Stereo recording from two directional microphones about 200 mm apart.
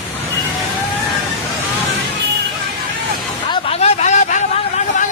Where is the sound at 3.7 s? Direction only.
35° left (ahead or behind).